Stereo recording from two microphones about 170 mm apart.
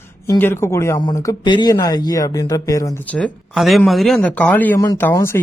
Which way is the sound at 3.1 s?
10° left (ahead or behind).